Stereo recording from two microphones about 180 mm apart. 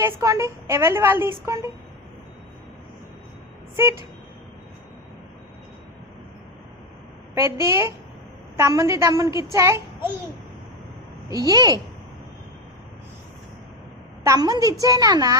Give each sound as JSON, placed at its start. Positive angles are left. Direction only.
{"t": 0.0, "sound": "a woman's voice", "side_deg": -15}
{"t": 7.3, "sound": "a woman's voice", "side_deg": -15}
{"t": 11.3, "sound": "a woman's voice", "side_deg": -20}
{"t": 14.3, "sound": "a woman's voice", "side_deg": -20}